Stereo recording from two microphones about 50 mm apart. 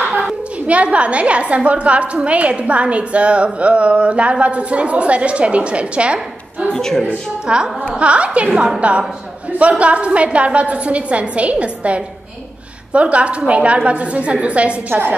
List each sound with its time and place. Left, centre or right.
0.0 s a sound: right
0.7 s a woman's voice: right
6.7 s a woman's voice: centre
7.4 s a woman's voice: centre